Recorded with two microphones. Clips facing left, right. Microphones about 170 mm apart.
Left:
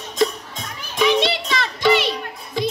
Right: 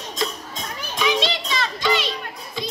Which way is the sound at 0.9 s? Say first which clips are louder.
Left 5 dB; 60° left (ahead or behind).